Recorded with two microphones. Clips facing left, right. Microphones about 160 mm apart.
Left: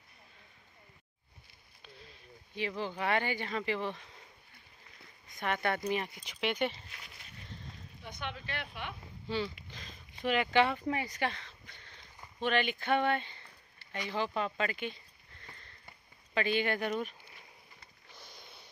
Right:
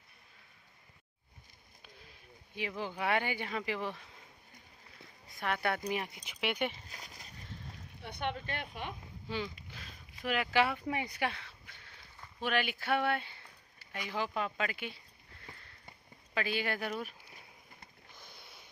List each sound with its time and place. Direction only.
1.8 s speech: 10° right (ahead or behind)
5.3 s speech: centre (ahead or behind)
6.9 s a sound: 40° right (ahead or behind)
8.0 s speech: 60° right (ahead or behind); by 8.9 s 45° right (ahead or behind)
9.3 s speech: 10° right (ahead or behind)
9.7 s a sound: 5° right (ahead or behind)
10.2 s speech: 5° right (ahead or behind)
15.4 s sniff: 5° right (ahead or behind)
16.3 s speech: 5° right (ahead or behind)
18.4 s a sound: 10° right (ahead or behind)